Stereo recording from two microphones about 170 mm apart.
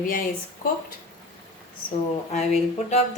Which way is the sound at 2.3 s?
40° left (ahead or behind).